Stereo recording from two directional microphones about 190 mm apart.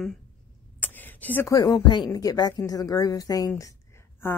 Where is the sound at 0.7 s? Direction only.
10° left (ahead or behind).